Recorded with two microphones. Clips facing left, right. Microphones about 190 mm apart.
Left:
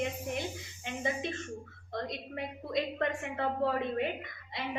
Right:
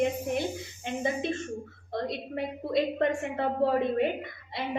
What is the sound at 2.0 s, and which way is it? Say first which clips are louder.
A woman's voice: right 6 dB; 30° right (ahead or behind).